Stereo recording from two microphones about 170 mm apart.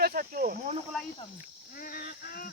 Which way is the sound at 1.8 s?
60° left (ahead or behind).